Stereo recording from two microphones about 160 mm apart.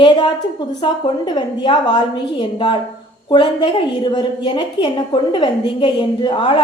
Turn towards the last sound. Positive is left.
turn(degrees=30)  # may be behind; listen again after turning